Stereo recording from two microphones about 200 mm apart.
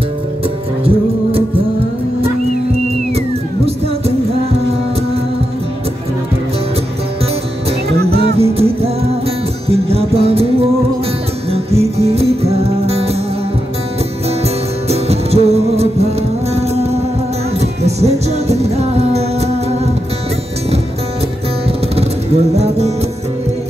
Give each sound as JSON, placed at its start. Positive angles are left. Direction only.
{"t": 8.4, "sound": "music", "side_deg": -30}
{"t": 11.5, "sound": "music", "side_deg": -30}
{"t": 14.9, "sound": "music", "side_deg": -30}
{"t": 21.9, "sound": "music", "side_deg": -30}